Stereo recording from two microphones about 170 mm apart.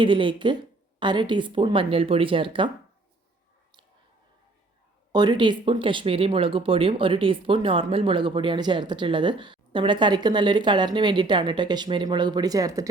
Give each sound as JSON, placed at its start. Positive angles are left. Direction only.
{"t": 0.0, "sound": "speech", "side_deg": -30}
{"t": 5.1, "sound": "speech", "side_deg": -25}